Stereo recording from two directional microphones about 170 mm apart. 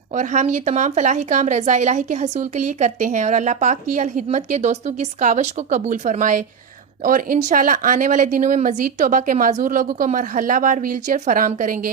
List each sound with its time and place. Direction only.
0.1 s speech: 45° right (ahead or behind)